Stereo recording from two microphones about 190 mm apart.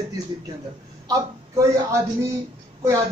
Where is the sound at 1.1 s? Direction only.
15° right (ahead or behind).